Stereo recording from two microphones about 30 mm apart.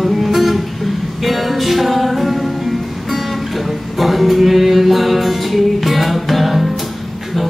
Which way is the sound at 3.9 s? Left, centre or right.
Centre.